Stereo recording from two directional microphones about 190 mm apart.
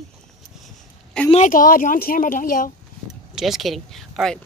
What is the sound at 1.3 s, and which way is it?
Speech, 45° left (ahead or behind).